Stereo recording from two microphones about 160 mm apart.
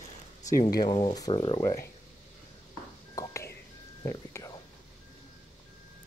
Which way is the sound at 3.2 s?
20° left (ahead or behind).